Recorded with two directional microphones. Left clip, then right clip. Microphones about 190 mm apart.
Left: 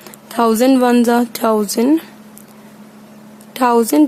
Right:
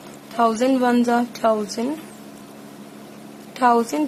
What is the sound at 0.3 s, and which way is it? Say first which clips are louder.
A woman's voice: left 6 dB; 60° left (ahead or behind).